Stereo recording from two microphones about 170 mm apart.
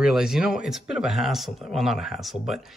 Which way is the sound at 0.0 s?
5° right (ahead or behind).